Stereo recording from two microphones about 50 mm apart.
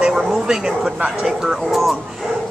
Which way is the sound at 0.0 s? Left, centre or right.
Centre.